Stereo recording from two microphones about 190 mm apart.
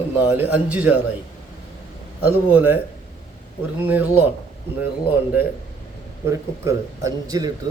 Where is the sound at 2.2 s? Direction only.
10° right (ahead or behind).